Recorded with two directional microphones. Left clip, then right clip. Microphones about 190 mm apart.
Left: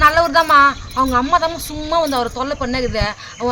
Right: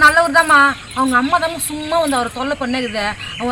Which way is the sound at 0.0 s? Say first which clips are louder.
Right 2 dB; 30° left (ahead or behind).